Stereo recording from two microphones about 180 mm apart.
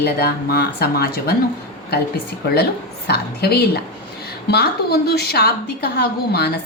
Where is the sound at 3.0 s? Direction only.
65° left (ahead or behind).